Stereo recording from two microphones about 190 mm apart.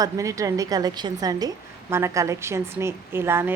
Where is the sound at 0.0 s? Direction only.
15° right (ahead or behind).